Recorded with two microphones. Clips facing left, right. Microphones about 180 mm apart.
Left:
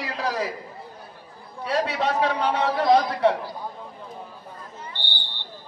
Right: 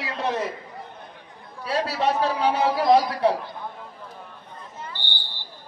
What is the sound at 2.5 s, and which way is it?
Speech, 30° right (ahead or behind).